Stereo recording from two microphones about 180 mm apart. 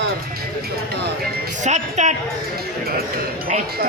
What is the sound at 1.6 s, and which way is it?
Speech, 40° right (ahead or behind).